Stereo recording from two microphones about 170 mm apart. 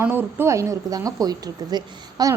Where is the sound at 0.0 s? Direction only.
10° right (ahead or behind).